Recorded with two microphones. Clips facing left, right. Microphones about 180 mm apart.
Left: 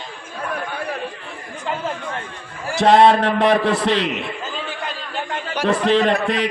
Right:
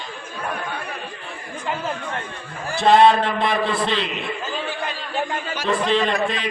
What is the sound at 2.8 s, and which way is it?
A man's voice, 75° left (ahead or behind).